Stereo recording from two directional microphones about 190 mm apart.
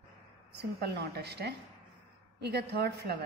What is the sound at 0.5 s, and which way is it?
A woman's voice, 60° right (ahead or behind).